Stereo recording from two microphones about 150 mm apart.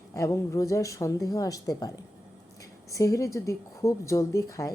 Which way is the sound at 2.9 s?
20° left (ahead or behind).